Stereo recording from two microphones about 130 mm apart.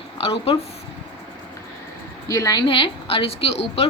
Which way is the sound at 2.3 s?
25° left (ahead or behind).